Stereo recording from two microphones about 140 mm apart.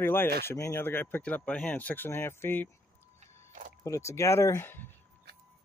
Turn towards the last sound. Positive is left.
turn(degrees=15)  # may be behind; listen again after turning